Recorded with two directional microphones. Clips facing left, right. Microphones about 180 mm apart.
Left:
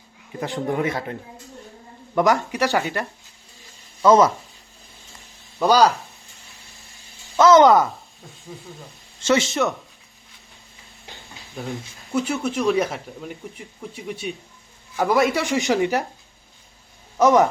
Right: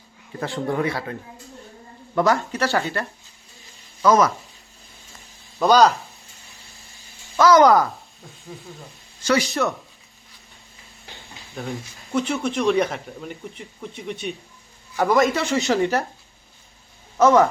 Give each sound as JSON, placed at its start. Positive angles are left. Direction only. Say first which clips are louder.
{"t": 0.3, "sound": "a man's voice", "louder": "even", "side_deg": 15}
{"t": 2.1, "sound": "speech", "louder": "left 1 dB", "side_deg": 15}
{"t": 4.0, "sound": "a man's voice", "louder": "left 2 dB", "side_deg": 25}
{"t": 5.5, "sound": "speech", "louder": "right 1 dB", "side_deg": 10}
{"t": 7.3, "sound": "a man's voice", "louder": "left 1 dB", "side_deg": 25}
{"t": 7.7, "sound": "speech", "louder": "left 1 dB", "side_deg": 0}
{"t": 9.2, "sound": "a man's voice", "louder": "left 1 dB", "side_deg": 25}
{"t": 9.5, "sound": "speech", "louder": "left 1 dB", "side_deg": 0}
{"t": 11.6, "sound": "speech", "louder": "even", "side_deg": 0}
{"t": 17.2, "sound": "speech", "louder": "even", "side_deg": 15}